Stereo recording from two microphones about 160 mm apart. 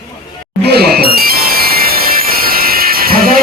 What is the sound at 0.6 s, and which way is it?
Music, 85° right.